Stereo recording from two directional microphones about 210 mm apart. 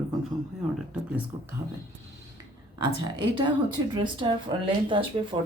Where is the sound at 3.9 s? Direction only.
20° right (ahead or behind).